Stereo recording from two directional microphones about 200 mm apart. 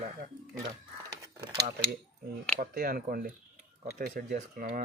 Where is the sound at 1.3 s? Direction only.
25° right (ahead or behind).